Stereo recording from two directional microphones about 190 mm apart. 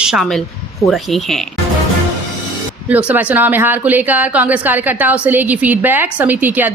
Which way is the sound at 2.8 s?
10° right (ahead or behind).